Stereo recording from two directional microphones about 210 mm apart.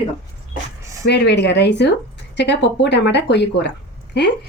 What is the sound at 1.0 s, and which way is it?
A woman's voice, 55° left (ahead or behind).